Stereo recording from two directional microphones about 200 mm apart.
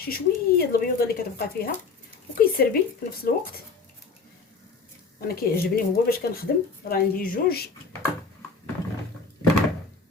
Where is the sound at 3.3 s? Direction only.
45° left (ahead or behind).